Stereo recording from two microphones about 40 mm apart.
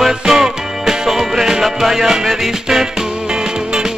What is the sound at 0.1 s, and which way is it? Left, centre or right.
Music, centre.